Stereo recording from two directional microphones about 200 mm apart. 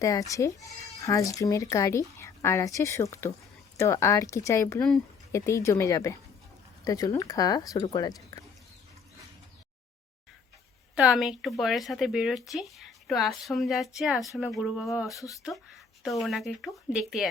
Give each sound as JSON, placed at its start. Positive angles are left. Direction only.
{"t": 0.0, "sound": "speech", "side_deg": 15}
{"t": 10.9, "sound": "speech", "side_deg": 0}